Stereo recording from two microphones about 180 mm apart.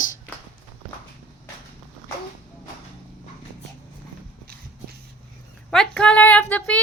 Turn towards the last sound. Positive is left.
turn(degrees=10)  # may be behind; listen again after turning